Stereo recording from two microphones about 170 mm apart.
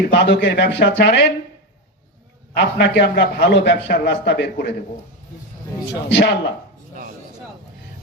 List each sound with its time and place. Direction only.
0.1 s a man's voice: 90° left
2.6 s a man's voice: 85° left
5.9 s a man's voice: 90° left